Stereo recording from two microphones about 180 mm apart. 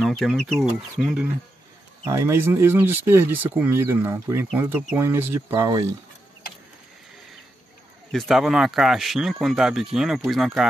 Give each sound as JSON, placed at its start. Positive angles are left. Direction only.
{"t": 0.0, "sound": "speech", "side_deg": 0}
{"t": 8.1, "sound": "speech", "side_deg": 0}